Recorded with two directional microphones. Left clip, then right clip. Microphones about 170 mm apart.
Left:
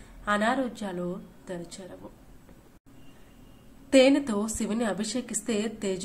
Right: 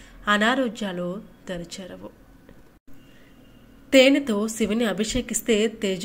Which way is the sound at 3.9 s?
Centre (ahead or behind).